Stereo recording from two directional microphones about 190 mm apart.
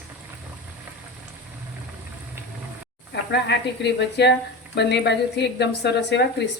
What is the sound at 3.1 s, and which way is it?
A woman's voice, 65° left (ahead or behind).